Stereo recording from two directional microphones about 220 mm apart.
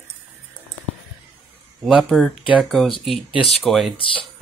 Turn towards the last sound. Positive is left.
turn(degrees=25)  # may be behind; listen again after turning